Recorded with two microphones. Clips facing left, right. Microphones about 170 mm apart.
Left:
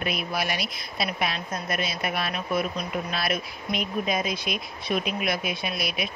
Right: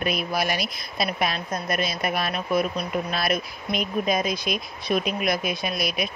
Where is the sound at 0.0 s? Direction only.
40° right (ahead or behind).